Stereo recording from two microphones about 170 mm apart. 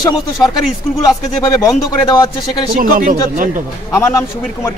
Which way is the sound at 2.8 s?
55° right (ahead or behind).